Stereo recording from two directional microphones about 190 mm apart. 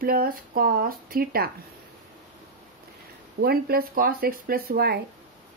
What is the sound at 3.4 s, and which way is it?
Speech, 55° right (ahead or behind).